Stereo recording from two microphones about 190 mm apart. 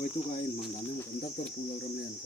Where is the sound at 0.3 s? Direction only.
40° left (ahead or behind).